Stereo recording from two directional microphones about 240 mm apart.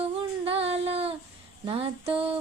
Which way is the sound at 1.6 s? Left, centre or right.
Right.